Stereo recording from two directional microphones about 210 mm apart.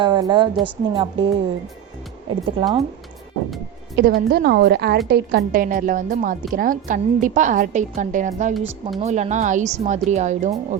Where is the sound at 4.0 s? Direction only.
45° right (ahead or behind).